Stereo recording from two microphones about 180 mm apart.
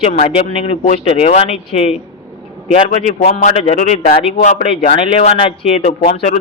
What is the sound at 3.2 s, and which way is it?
Speech, 40° left (ahead or behind).